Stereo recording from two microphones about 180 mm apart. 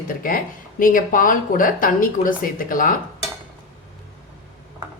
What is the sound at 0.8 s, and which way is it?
Speech, 50° left (ahead or behind).